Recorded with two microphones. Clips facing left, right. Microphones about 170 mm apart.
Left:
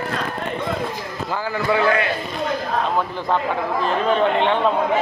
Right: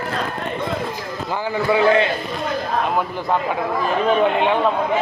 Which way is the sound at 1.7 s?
25° right (ahead or behind).